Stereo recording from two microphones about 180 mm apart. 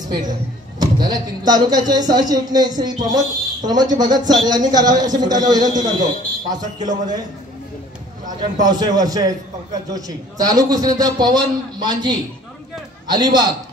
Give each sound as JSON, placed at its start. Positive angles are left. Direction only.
{"t": 0.1, "sound": "a man's voice", "side_deg": -20}
{"t": 8.4, "sound": "a man's voice", "side_deg": -25}